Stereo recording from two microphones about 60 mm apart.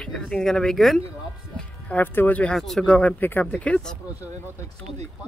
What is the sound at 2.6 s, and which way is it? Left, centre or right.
Speech, centre.